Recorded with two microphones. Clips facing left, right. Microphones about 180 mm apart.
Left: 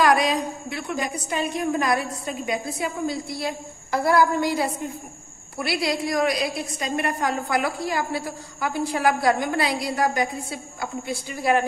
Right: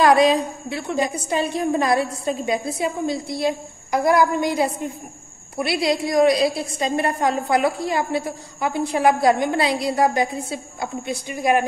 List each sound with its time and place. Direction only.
0.0 s a woman's voice: 25° right (ahead or behind)